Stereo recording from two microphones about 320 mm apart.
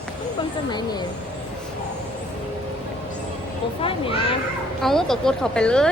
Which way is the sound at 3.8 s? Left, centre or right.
Centre.